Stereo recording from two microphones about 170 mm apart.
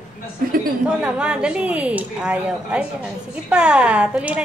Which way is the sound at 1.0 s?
5° right (ahead or behind).